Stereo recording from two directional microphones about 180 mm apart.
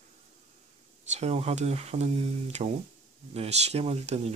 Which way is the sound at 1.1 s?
35° right (ahead or behind).